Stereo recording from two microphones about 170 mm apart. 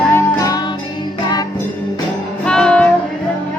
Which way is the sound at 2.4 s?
5° left (ahead or behind).